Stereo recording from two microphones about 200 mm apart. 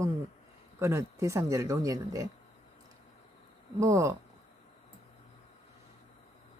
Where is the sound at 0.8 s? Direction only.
15° right (ahead or behind).